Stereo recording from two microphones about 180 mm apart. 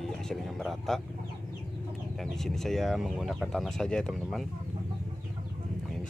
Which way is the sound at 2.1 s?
Centre (ahead or behind).